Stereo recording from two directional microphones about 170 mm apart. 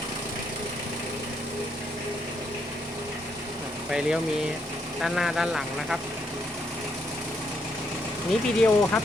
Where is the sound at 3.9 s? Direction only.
5° right (ahead or behind).